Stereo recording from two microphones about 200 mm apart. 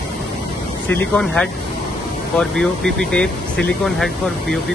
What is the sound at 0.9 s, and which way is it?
Speech, 5° left (ahead or behind).